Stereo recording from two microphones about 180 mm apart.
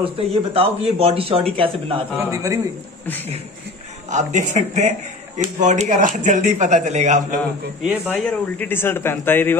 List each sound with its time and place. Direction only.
0.0 s speech: 30° right (ahead or behind)
2.3 s a man's voice: 20° right (ahead or behind)
4.1 s speech: 40° right (ahead or behind)
7.8 s speech: 5° right (ahead or behind)
8.5 s a man's voice: 10° left (ahead or behind)